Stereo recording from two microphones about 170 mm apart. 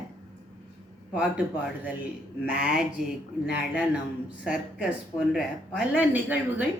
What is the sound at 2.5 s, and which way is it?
Speech, 5° right (ahead or behind).